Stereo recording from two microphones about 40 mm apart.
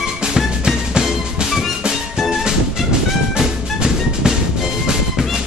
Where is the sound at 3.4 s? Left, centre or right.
Centre.